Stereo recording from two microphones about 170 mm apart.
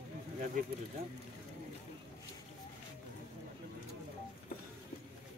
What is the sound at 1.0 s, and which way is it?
Speech, 60° right (ahead or behind).